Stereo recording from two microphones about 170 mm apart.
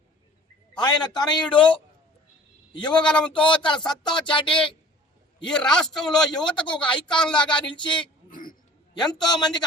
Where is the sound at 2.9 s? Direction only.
5° left (ahead or behind).